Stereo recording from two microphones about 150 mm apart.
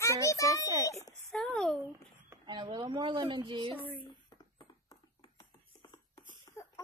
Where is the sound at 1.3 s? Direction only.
5° left (ahead or behind).